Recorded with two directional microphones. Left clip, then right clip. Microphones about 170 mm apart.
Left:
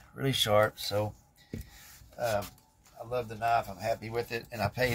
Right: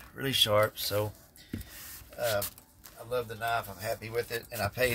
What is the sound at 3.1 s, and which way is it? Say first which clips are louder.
Speech: left 2 dB; 40° right (ahead or behind).